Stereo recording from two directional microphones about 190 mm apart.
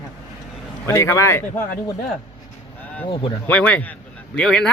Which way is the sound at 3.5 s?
5° left (ahead or behind).